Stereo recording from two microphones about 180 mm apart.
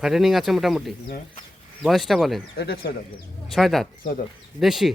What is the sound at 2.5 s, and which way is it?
Speech, 65° left (ahead or behind).